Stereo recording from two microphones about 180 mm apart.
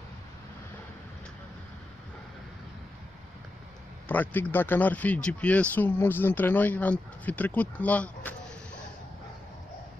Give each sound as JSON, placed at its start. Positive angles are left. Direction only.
{"t": 4.1, "sound": "speech", "side_deg": 10}